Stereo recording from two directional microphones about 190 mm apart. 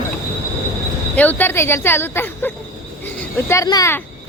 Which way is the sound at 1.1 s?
10° left (ahead or behind).